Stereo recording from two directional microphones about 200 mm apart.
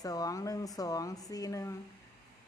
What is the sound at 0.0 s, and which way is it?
Speech, 20° left (ahead or behind).